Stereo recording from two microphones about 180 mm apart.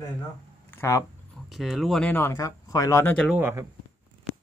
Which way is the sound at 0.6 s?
15° left (ahead or behind).